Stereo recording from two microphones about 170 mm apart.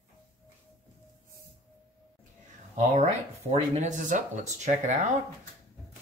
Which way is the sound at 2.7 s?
40° right (ahead or behind).